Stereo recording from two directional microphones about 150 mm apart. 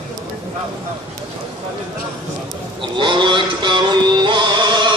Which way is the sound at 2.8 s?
35° right (ahead or behind).